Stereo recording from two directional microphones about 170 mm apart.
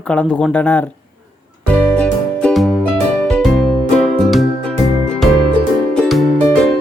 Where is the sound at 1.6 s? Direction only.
5° left (ahead or behind).